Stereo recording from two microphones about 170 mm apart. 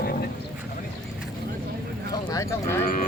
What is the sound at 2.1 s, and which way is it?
Clip-clop, 20° left (ahead or behind).